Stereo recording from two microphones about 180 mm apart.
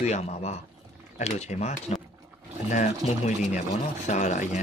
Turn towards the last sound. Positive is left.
turn(degrees=40)  # may be behind; listen again after turning